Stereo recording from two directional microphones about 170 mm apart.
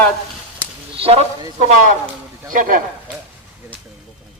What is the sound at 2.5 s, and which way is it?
Speech, 50° right (ahead or behind).